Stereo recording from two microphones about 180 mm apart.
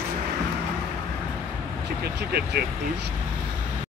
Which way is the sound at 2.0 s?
60° right (ahead or behind).